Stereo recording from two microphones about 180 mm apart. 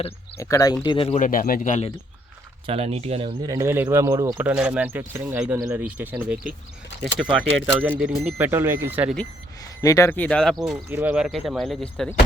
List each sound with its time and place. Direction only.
0.3 s speech: 15° left (ahead or behind)
0.9 s speech: 30° left (ahead or behind)
2.6 s speech: 35° right (ahead or behind)
3.5 s speech: 15° right (ahead or behind)
4.4 s speech: 5° right (ahead or behind)
7.7 s speech: 10° right (ahead or behind)
9.8 s speech: 15° left (ahead or behind); by 10.8 s centre (ahead or behind)
10.8 s speech: 10° right (ahead or behind); by 12.1 s 5° left (ahead or behind)